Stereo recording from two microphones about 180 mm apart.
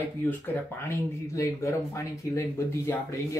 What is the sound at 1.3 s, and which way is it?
Speech, 15° left (ahead or behind).